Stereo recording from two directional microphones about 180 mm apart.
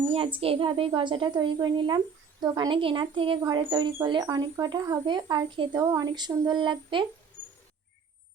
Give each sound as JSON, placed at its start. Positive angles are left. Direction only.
{"t": 0.1, "sound": "speech", "side_deg": -30}